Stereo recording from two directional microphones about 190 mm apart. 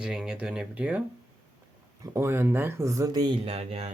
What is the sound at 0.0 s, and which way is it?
Speech, 5° right (ahead or behind).